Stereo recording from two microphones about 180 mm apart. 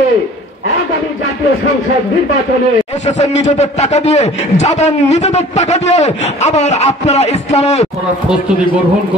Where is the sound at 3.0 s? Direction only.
40° left (ahead or behind).